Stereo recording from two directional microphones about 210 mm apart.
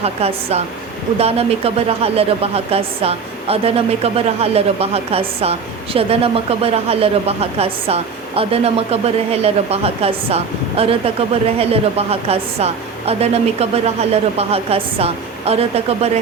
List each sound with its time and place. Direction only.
0.0 s a woman's voice: 30° right (ahead or behind)